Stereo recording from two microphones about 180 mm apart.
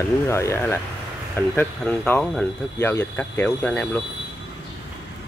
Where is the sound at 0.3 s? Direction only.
15° left (ahead or behind).